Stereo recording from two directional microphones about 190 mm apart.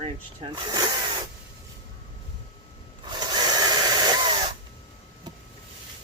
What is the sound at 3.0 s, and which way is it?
Wood, 25° right (ahead or behind).